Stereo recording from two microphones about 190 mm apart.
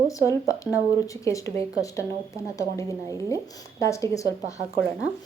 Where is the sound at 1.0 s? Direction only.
15° left (ahead or behind).